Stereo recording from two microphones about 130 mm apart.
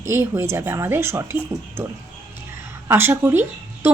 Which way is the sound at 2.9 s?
15° right (ahead or behind).